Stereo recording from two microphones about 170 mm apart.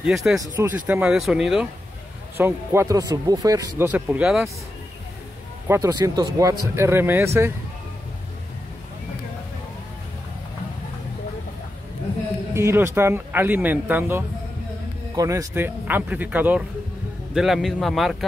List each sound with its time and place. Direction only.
0.0 s a man's voice: centre (ahead or behind)
0.4 s speech: 15° right (ahead or behind)
5.7 s speech: 20° right (ahead or behind)
12.5 s a man's voice: 15° right (ahead or behind); by 18.1 s centre (ahead or behind)